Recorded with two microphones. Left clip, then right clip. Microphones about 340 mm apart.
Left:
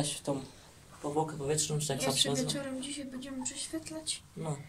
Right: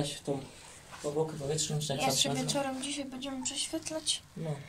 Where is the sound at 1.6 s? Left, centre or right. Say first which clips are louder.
Even; left.